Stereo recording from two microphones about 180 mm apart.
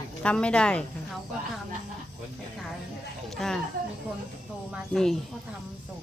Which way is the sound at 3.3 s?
Centre (ahead or behind).